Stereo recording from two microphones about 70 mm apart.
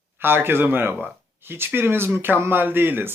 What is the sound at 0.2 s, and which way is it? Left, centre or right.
Speech, right.